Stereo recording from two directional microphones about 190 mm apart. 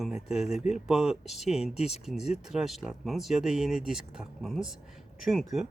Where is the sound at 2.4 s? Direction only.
Centre (ahead or behind).